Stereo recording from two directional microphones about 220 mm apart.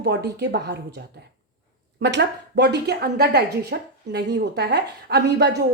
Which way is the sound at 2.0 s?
50° right (ahead or behind).